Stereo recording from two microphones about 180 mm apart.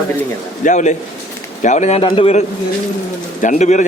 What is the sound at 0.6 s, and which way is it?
A man's voice, 45° left (ahead or behind).